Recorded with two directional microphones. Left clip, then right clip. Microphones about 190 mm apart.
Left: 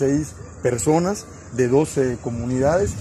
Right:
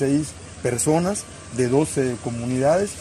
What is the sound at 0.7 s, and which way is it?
Speech, 15° left (ahead or behind).